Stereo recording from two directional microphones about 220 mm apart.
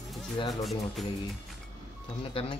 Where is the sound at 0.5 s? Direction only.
Centre (ahead or behind).